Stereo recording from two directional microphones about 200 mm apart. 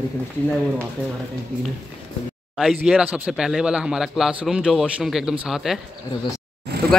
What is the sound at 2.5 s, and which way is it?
Speech, 5° right (ahead or behind).